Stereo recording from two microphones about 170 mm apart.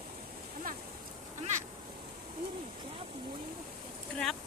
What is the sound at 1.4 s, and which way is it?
Quack, 45° right (ahead or behind).